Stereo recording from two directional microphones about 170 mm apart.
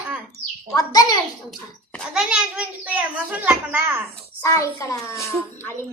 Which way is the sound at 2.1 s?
5° right (ahead or behind).